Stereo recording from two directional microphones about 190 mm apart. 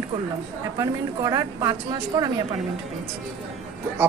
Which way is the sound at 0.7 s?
20° right (ahead or behind).